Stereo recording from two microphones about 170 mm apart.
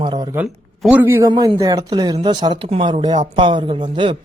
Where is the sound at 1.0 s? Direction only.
15° right (ahead or behind).